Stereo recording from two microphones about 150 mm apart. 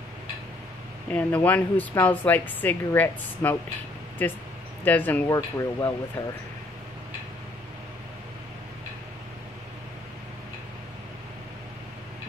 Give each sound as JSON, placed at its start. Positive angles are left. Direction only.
{"t": 1.1, "sound": "speech", "side_deg": 10}